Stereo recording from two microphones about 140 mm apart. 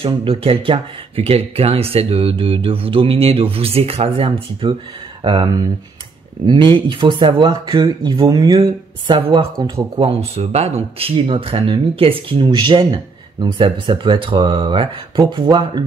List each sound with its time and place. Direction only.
0.0 s speech: 40° right (ahead or behind)
9.4 s speech: 20° right (ahead or behind)
9.9 s speech: 45° right (ahead or behind)